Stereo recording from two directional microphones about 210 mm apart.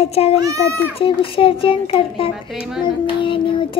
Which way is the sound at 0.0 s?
30° left (ahead or behind).